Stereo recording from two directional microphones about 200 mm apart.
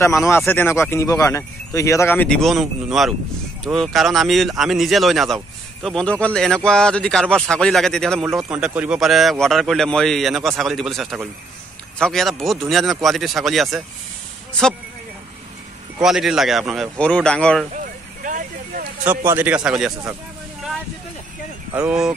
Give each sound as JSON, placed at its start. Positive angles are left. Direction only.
{"t": 0.0, "sound": "speech", "side_deg": 15}
{"t": 16.0, "sound": "speech", "side_deg": -5}
{"t": 17.7, "sound": "vehicle", "side_deg": -40}
{"t": 19.0, "sound": "speech", "side_deg": -10}
{"t": 21.7, "sound": "speech", "side_deg": -5}